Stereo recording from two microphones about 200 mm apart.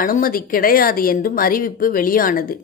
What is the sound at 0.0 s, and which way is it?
A woman's voice, 45° left (ahead or behind).